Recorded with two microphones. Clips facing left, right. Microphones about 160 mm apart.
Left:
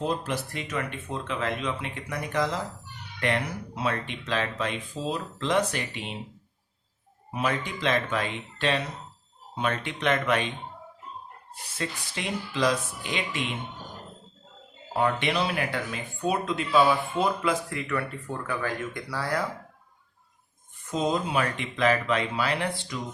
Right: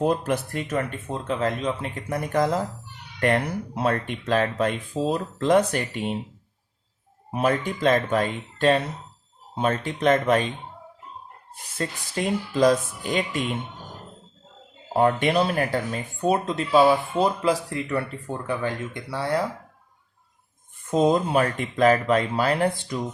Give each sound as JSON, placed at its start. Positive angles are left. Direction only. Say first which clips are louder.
{"t": 0.0, "sound": "speech", "louder": "right 6 dB", "side_deg": -50}
{"t": 7.3, "sound": "speech", "louder": "right 6 dB", "side_deg": -40}
{"t": 11.8, "sound": "speech", "louder": "right 6 dB", "side_deg": -45}
{"t": 14.9, "sound": "speech", "louder": "right 6 dB", "side_deg": -45}
{"t": 20.9, "sound": "speech", "louder": "right 6 dB", "side_deg": -45}